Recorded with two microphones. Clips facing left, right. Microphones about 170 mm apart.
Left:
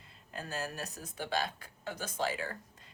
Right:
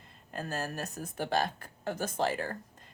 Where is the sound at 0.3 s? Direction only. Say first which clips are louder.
Right 3 dB; 45° right (ahead or behind).